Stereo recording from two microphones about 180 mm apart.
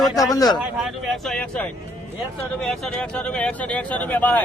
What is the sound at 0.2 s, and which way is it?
Speech, 20° left (ahead or behind).